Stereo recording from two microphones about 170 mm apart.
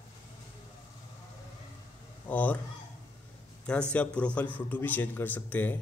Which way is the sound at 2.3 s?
10° left (ahead or behind).